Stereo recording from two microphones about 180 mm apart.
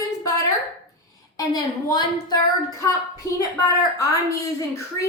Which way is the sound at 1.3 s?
25° left (ahead or behind).